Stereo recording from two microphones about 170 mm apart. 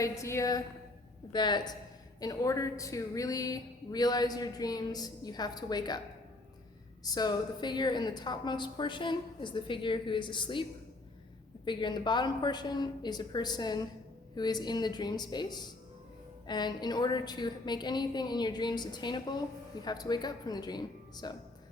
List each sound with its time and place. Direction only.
0.0 s a woman's voice: 15° left (ahead or behind)
7.0 s a woman's voice: 25° left (ahead or behind)